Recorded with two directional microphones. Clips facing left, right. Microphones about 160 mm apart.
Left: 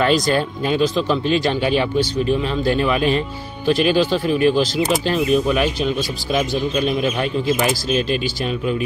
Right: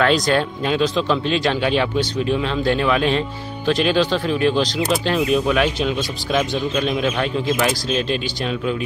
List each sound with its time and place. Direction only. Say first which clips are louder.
0.0 s speech: even; 5° left (ahead or behind)